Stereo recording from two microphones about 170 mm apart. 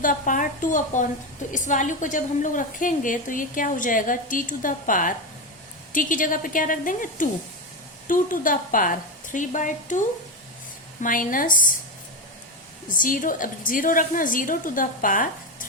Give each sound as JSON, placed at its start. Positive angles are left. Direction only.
{"t": 0.0, "sound": "a woman's voice", "side_deg": 50}
{"t": 11.0, "sound": "a woman's voice", "side_deg": 55}
{"t": 12.9, "sound": "a woman's voice", "side_deg": 55}